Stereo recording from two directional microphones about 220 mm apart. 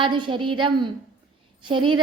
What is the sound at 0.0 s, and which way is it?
A woman's voice, 20° right (ahead or behind).